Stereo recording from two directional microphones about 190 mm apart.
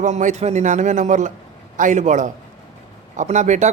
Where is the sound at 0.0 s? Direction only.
40° right (ahead or behind).